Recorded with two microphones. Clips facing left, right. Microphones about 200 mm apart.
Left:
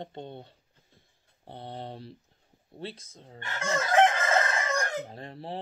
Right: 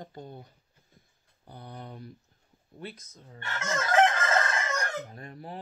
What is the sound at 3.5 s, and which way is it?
Chicken, 30° left (ahead or behind).